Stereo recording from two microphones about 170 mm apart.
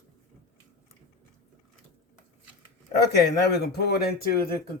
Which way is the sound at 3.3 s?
75° left (ahead or behind).